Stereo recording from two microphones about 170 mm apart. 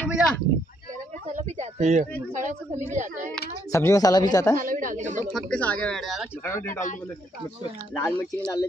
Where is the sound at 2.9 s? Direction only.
45° right (ahead or behind).